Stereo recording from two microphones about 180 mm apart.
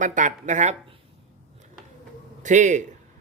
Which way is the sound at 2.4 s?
45° right (ahead or behind).